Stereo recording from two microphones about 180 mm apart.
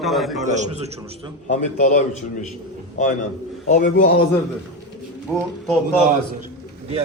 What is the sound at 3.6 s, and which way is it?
Speech, 45° left (ahead or behind).